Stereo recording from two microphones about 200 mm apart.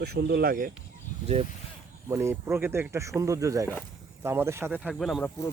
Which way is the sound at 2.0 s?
15° right (ahead or behind).